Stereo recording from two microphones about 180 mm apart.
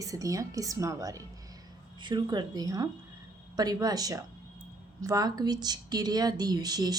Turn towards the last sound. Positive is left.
turn(degrees=-20)  # may be behind; listen again after turning